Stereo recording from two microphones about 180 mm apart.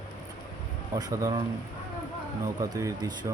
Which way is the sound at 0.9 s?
20° right (ahead or behind).